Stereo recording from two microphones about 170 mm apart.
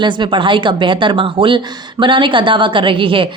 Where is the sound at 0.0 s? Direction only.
30° right (ahead or behind).